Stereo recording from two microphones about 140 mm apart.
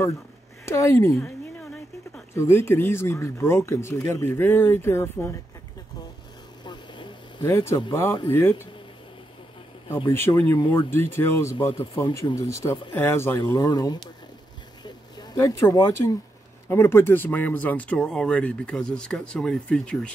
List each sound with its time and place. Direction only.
0.7 s speech: 20° left (ahead or behind)
2.3 s speech: 15° left (ahead or behind)
6.6 s vehicle: 35° left (ahead or behind)
7.4 s speech: 20° left (ahead or behind)
10.0 s speech: 15° left (ahead or behind)
13.4 s speech: 25° left (ahead or behind)
14.8 s a sound: 30° left (ahead or behind)
15.3 s speech: 20° left (ahead or behind); by 20.1 s 5° left (ahead or behind)